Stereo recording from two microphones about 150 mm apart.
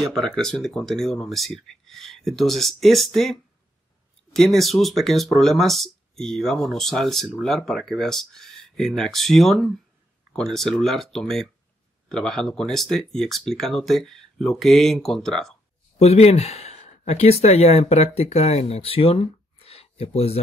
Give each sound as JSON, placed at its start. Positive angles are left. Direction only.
{"t": 0.0, "sound": "speech", "side_deg": 0}
{"t": 16.0, "sound": "speech", "side_deg": 45}